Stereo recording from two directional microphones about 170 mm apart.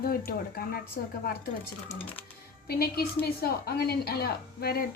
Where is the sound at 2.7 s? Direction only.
65° left (ahead or behind).